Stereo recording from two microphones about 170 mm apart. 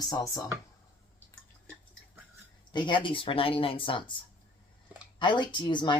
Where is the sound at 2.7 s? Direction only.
30° left (ahead or behind).